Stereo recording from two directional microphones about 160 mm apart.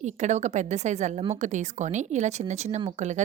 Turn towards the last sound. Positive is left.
turn(degrees=-45)  # may be behind; listen again after turning